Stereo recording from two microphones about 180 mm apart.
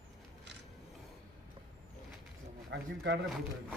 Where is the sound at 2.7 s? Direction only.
80° right.